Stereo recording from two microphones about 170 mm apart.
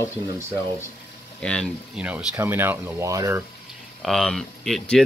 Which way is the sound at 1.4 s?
5° left (ahead or behind).